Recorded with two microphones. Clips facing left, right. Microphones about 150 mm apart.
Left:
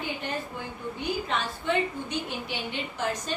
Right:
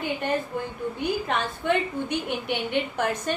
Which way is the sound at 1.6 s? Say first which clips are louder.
Right 3 dB; 60° right (ahead or behind).